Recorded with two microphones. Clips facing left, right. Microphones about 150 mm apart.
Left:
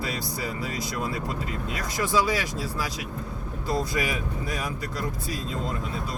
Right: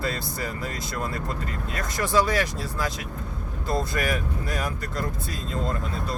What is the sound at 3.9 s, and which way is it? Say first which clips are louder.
Speech: right 1 dB; 15° left (ahead or behind).